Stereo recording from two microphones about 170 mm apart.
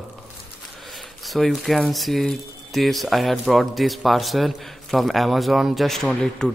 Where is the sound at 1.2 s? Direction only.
Centre (ahead or behind).